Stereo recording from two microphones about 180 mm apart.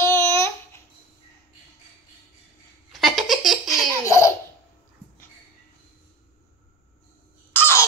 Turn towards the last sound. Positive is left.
turn(degrees=10)  # may be behind; listen again after turning